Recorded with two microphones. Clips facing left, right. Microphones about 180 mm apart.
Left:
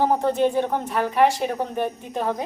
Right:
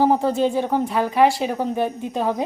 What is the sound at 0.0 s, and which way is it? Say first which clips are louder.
Speech: right 2 dB; 10° right (ahead or behind).